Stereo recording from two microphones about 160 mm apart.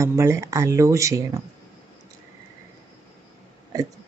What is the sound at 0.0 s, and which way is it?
Speech, 15° right (ahead or behind).